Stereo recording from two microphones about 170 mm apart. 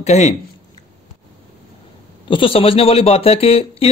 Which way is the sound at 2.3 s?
30° left (ahead or behind).